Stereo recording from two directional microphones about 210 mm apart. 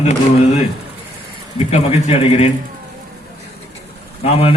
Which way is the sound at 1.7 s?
30° left (ahead or behind).